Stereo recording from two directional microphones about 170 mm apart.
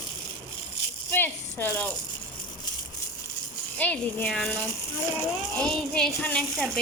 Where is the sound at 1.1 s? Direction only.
10° left (ahead or behind).